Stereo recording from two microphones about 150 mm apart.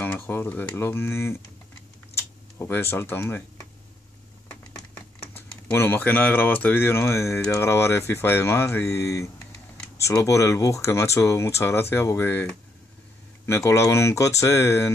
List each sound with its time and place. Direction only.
0.0 s speech: 15° left (ahead or behind)
4.5 s a sound: 15° left (ahead or behind)
5.7 s speech: 15° left (ahead or behind)